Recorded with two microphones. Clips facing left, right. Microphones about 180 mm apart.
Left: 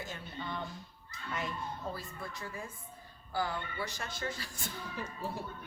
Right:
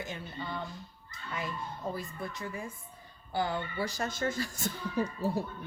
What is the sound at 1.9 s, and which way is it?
Speech, 20° right (ahead or behind).